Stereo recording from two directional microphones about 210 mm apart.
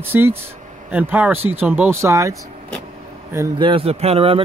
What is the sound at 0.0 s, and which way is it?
Speech, 10° right (ahead or behind).